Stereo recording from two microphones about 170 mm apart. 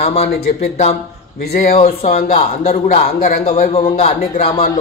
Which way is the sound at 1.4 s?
65° left (ahead or behind).